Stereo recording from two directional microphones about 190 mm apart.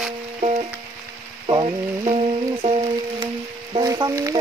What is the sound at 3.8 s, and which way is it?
Music, 20° right (ahead or behind).